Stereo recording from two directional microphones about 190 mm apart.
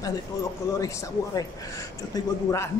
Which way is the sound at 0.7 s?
15° left (ahead or behind).